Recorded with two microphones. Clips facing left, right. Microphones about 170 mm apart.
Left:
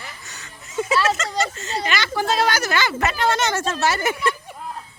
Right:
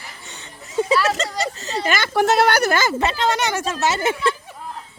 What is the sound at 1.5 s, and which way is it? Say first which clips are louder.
Speech: right 2 dB; 35° right (ahead or behind).